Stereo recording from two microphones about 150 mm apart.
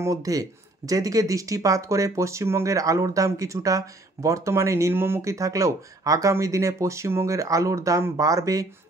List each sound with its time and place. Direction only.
0.0 s speech: 25° right (ahead or behind)